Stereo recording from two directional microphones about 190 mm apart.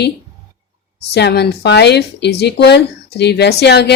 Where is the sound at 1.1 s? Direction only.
60° left (ahead or behind).